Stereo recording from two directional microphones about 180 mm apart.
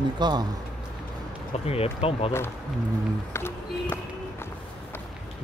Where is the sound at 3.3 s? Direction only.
15° left (ahead or behind).